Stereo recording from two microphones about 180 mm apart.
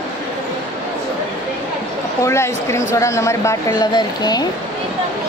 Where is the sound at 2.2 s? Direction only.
15° left (ahead or behind).